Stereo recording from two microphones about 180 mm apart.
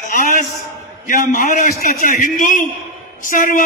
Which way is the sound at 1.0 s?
50° left (ahead or behind).